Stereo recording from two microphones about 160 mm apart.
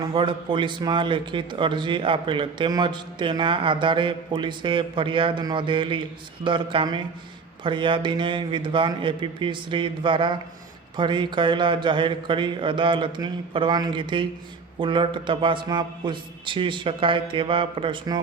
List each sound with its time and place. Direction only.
0.1 s a man's voice: 35° right (ahead or behind)